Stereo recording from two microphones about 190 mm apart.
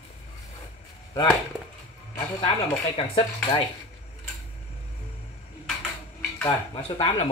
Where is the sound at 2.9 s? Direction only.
30° left (ahead or behind).